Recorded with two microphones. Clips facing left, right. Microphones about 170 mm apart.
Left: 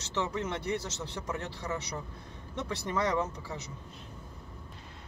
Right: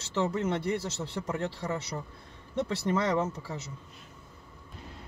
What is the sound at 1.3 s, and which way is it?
Speech, 50° right (ahead or behind).